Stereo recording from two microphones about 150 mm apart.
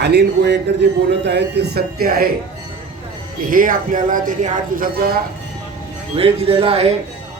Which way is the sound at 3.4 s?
65° right (ahead or behind).